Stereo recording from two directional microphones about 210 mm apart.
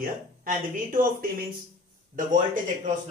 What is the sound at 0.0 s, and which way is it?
Speech, 40° right (ahead or behind).